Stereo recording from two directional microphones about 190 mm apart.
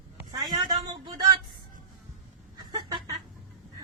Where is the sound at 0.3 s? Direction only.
20° right (ahead or behind).